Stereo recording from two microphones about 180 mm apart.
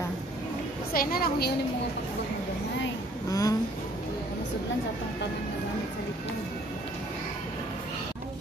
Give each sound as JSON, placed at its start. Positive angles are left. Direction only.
{"t": 0.9, "sound": "a woman's voice", "side_deg": 55}
{"t": 3.3, "sound": "speech", "side_deg": 20}